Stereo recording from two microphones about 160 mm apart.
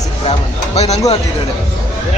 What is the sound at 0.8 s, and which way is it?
Speech, 40° left (ahead or behind).